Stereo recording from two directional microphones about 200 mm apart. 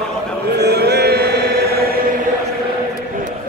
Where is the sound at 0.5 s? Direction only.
55° right (ahead or behind).